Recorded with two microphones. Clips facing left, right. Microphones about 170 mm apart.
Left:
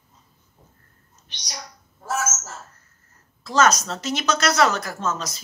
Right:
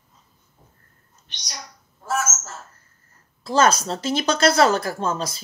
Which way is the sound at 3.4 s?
30° right (ahead or behind).